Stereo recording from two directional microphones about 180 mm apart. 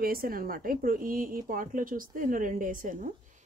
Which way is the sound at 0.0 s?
55° right (ahead or behind).